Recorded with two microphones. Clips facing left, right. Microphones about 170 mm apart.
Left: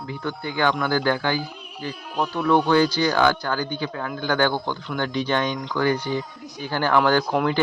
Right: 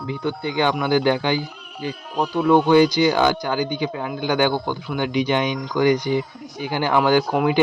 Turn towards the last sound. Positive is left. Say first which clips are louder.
# right 3 dB
turn(degrees=-10)  # may be behind; listen again after turning